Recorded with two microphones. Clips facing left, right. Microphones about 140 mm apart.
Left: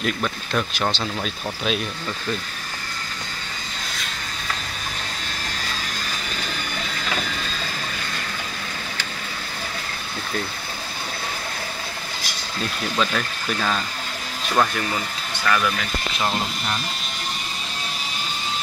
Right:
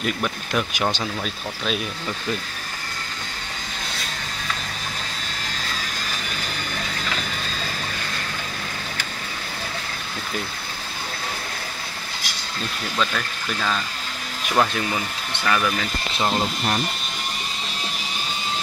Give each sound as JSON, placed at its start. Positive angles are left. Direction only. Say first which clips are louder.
{"t": 0.0, "sound": "speech", "louder": "even", "side_deg": -10}
{"t": 12.9, "sound": "speech", "louder": "left 1 dB", "side_deg": 10}
{"t": 14.5, "sound": "speech", "louder": "even", "side_deg": -15}